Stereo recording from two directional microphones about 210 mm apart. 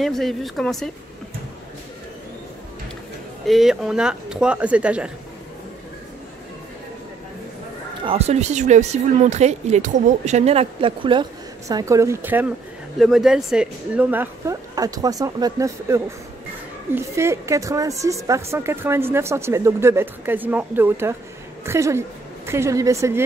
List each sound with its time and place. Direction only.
0.0 s speech: centre (ahead or behind)
3.4 s speech: centre (ahead or behind)
8.0 s a woman's voice: 30° right (ahead or behind)